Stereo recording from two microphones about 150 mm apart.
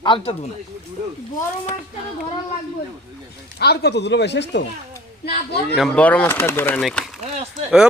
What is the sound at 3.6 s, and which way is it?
Speech, 90° left.